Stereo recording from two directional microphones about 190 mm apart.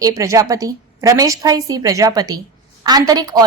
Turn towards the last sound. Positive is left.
turn(degrees=-20)  # may be behind; listen again after turning